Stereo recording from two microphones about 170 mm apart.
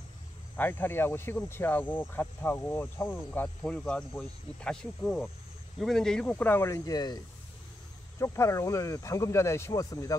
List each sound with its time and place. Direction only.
0.6 s speech: 10° left (ahead or behind)
8.2 s speech: 15° left (ahead or behind)